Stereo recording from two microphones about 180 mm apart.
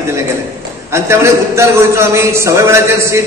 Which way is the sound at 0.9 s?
15° right (ahead or behind).